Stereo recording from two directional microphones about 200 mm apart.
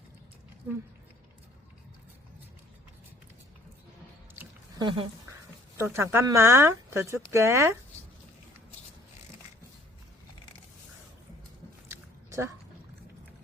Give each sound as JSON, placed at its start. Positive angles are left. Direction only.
{"t": 4.8, "sound": "speech", "side_deg": -25}
{"t": 5.7, "sound": "speech", "side_deg": -15}
{"t": 11.9, "sound": "biting", "side_deg": -15}